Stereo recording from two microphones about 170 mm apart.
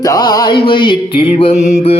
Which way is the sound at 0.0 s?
20° left (ahead or behind).